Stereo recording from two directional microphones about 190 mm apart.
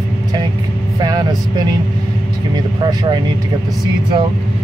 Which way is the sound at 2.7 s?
25° right (ahead or behind).